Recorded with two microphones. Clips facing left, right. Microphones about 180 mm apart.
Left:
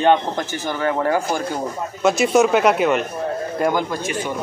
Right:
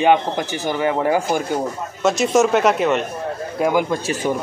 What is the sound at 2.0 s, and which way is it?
Speech, centre (ahead or behind).